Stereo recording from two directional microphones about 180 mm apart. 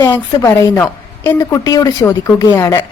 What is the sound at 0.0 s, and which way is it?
A woman's voice, 15° left (ahead or behind).